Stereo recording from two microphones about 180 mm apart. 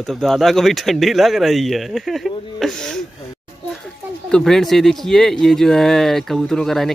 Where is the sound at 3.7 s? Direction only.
5° left (ahead or behind).